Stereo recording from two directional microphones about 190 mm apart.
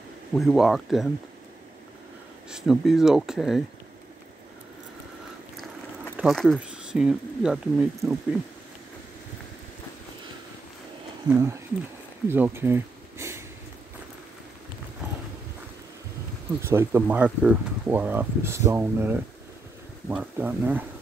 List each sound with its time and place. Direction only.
0.3 s speech: centre (ahead or behind)
2.5 s speech: centre (ahead or behind)
6.1 s speech: centre (ahead or behind)
11.2 s speech: 15° right (ahead or behind)
16.6 s speech: 10° right (ahead or behind)